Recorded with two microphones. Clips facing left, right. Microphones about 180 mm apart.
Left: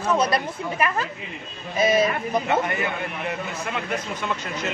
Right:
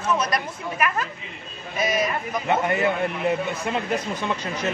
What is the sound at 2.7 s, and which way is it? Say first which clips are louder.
Speech: right 5 dB; 30° right (ahead or behind).